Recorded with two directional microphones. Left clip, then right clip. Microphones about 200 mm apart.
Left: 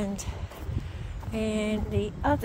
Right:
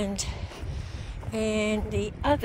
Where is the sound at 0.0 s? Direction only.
15° right (ahead or behind).